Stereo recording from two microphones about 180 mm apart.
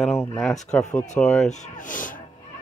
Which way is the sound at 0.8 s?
40° left (ahead or behind).